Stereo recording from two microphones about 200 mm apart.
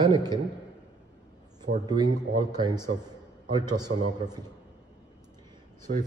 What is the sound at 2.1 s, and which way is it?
A man's voice, 20° right (ahead or behind).